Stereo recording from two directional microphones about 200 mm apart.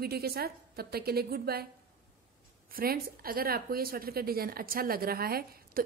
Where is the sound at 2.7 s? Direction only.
50° right (ahead or behind).